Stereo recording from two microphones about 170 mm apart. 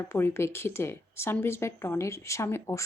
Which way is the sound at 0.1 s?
15° left (ahead or behind).